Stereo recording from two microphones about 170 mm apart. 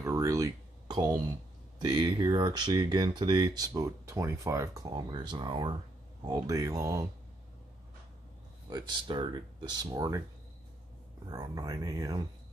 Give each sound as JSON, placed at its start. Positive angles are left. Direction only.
{"t": 0.0, "sound": "a sound", "side_deg": -20}
{"t": 1.8, "sound": "speech", "side_deg": -25}
{"t": 8.6, "sound": "speech", "side_deg": -25}
{"t": 11.2, "sound": "speech", "side_deg": -25}